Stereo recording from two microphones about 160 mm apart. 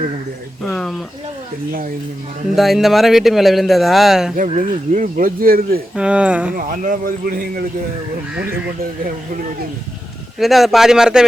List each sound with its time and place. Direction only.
2.6 s speech: centre (ahead or behind)
4.5 s speech: 55° right (ahead or behind)
6.0 s speech: 5° right (ahead or behind)
6.6 s speech: 55° right (ahead or behind)
10.4 s speech: centre (ahead or behind)